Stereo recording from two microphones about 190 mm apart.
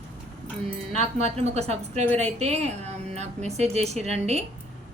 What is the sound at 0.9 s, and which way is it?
A woman's voice, 35° right (ahead or behind).